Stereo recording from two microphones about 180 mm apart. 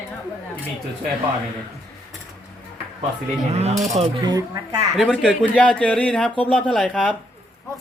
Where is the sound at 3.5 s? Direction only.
40° right (ahead or behind).